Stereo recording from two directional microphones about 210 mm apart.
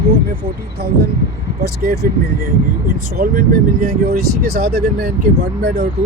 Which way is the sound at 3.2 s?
40° right (ahead or behind).